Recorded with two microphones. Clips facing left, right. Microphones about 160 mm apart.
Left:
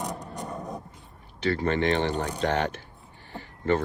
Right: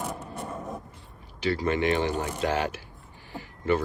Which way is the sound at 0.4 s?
15° left (ahead or behind).